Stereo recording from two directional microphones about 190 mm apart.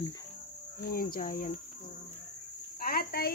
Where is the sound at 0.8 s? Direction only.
50° left (ahead or behind).